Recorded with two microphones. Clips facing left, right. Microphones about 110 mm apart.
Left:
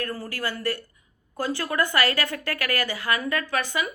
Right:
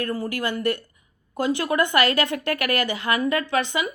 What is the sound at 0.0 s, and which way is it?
A woman's voice, 20° right (ahead or behind).